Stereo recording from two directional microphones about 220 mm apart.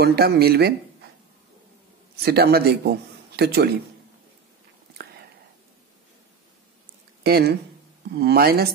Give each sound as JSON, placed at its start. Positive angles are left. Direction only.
{"t": 0.0, "sound": "a man's voice", "side_deg": -45}
{"t": 2.2, "sound": "a man's voice", "side_deg": -45}
{"t": 5.0, "sound": "whispering", "side_deg": -45}
{"t": 7.2, "sound": "a man's voice", "side_deg": -45}